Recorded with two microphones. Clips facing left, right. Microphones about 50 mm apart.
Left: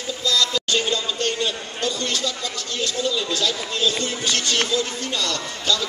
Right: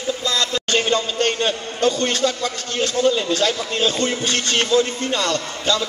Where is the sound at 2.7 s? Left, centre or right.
Right.